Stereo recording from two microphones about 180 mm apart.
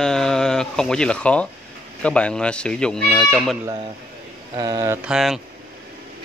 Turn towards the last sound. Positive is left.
turn(degrees=0)  # may be behind; listen again after turning